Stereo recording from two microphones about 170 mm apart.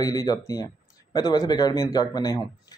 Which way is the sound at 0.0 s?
20° left (ahead or behind).